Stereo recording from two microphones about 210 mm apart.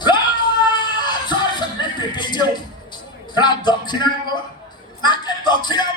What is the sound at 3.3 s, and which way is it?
Speech, 20° left (ahead or behind).